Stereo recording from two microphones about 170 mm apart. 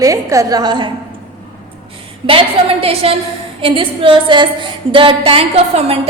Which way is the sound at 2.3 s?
35° right (ahead or behind).